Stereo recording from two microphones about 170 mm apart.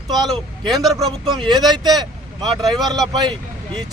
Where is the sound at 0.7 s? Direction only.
Centre (ahead or behind).